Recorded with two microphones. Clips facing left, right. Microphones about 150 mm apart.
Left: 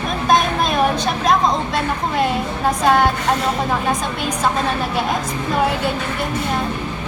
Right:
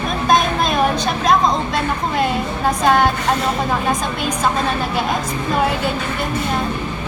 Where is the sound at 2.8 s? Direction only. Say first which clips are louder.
Even; 5° left (ahead or behind).